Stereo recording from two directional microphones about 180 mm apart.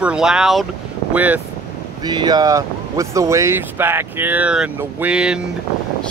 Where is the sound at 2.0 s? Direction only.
25° right (ahead or behind).